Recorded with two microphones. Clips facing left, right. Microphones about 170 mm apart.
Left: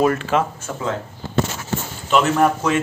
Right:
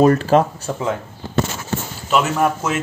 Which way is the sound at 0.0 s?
35° right (ahead or behind).